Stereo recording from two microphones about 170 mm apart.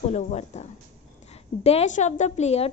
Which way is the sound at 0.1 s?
40° left (ahead or behind).